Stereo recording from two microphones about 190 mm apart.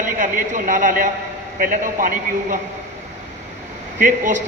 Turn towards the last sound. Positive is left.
turn(degrees=-40)  # may be behind; listen again after turning